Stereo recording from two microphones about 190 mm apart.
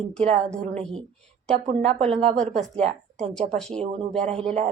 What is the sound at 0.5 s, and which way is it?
Speech, 40° right (ahead or behind).